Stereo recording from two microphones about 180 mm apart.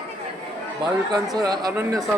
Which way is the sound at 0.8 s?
20° right (ahead or behind).